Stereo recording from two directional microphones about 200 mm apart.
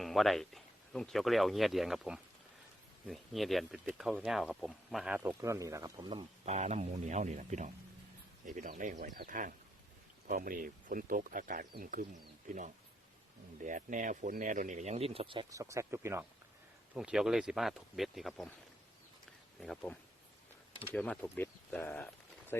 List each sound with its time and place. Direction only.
0.0 s speech: centre (ahead or behind)
19.5 s speech: 5° left (ahead or behind)